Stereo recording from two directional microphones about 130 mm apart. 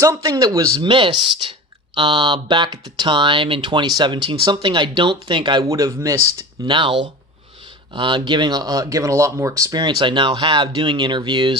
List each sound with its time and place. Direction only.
0.0 s speech: 25° right (ahead or behind)
0.9 s speech: 40° right (ahead or behind)
5.6 s speech: 25° right (ahead or behind)
6.7 s speech: 40° right (ahead or behind)